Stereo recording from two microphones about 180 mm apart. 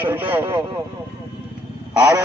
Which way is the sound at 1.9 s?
20° right (ahead or behind).